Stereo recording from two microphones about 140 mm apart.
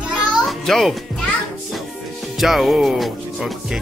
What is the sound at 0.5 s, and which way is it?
Music, centre (ahead or behind).